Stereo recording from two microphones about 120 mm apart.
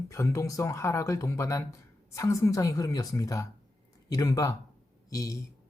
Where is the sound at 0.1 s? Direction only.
25° left (ahead or behind).